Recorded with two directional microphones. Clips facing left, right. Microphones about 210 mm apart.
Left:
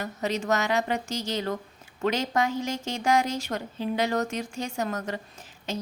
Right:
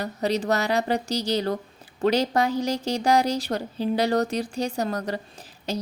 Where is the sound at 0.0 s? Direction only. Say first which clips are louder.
Right 4 dB; 35° right (ahead or behind).